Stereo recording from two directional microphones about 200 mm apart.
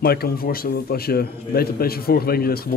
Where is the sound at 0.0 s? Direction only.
50° left (ahead or behind).